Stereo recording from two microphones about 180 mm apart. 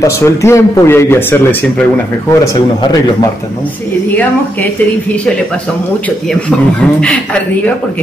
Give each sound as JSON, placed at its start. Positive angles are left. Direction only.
{"t": 0.0, "sound": "speech", "side_deg": 15}